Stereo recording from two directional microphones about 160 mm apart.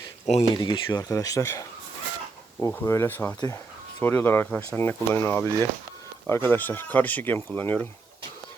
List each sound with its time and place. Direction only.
0.3 s speech: 40° left (ahead or behind)
0.6 s speech: 30° left (ahead or behind); by 4.8 s 5° left (ahead or behind)
4.8 s speech: 15° left (ahead or behind)